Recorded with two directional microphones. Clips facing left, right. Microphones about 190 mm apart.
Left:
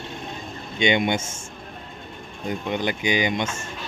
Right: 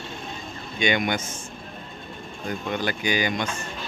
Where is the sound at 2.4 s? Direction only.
20° left (ahead or behind).